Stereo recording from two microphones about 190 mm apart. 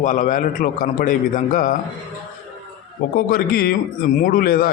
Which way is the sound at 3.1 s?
50° left (ahead or behind).